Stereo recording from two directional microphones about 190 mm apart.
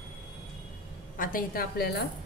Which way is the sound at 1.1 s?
50° left (ahead or behind).